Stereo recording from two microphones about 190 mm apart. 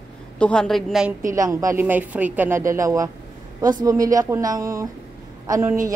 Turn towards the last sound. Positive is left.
turn(degrees=-15)  # may be behind; listen again after turning